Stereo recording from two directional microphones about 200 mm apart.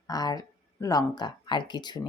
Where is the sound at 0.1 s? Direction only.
20° left (ahead or behind).